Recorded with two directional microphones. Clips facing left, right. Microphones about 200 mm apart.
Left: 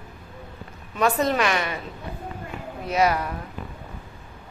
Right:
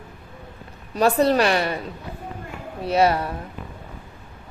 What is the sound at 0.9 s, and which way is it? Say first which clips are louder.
Speech: right 4 dB; 35° right (ahead or behind).